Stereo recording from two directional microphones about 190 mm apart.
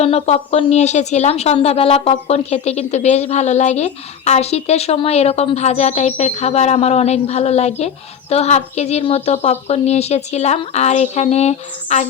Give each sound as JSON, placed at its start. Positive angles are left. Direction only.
{"t": 0.0, "sound": "speech", "side_deg": 35}